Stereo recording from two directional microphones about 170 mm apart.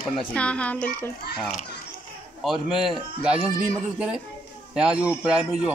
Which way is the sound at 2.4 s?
Centre (ahead or behind).